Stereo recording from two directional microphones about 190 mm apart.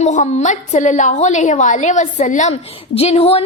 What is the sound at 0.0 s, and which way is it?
A woman's voice, 40° left (ahead or behind).